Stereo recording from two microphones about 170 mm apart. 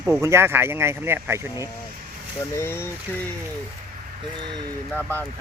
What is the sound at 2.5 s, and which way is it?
Speech, 15° left (ahead or behind).